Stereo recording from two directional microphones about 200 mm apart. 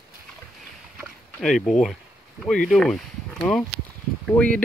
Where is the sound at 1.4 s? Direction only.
Centre (ahead or behind).